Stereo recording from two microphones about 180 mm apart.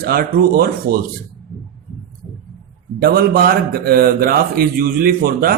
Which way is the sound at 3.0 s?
55° right (ahead or behind).